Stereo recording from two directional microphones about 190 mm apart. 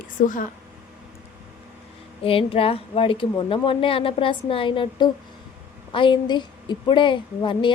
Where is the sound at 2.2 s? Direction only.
30° left (ahead or behind).